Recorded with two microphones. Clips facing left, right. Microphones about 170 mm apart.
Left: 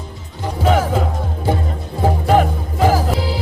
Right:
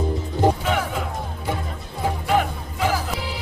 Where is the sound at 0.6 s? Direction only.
40° left (ahead or behind).